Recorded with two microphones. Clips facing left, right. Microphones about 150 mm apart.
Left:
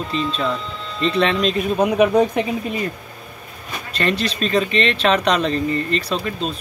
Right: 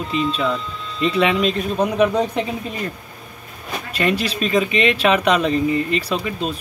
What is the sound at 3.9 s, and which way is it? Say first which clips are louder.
Speech: right 1 dB; 10° right (ahead or behind).